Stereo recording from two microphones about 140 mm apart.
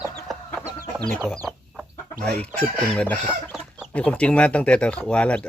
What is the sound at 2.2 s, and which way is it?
Speech, 5° left (ahead or behind).